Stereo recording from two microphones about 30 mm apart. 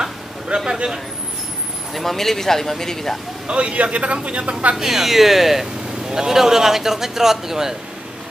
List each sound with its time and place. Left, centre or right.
0.5 s speech: right
2.0 s speech: centre
3.4 s a man's voice: right
3.7 s speech: right
4.7 s a man's voice: centre
6.0 s a man's voice: centre